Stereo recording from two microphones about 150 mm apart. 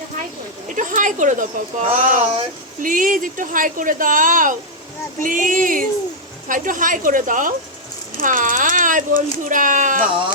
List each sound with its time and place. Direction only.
0.7 s speech: 60° right (ahead or behind)